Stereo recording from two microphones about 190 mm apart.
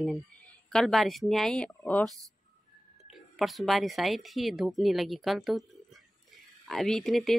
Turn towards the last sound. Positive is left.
turn(degrees=0)  # may be behind; listen again after turning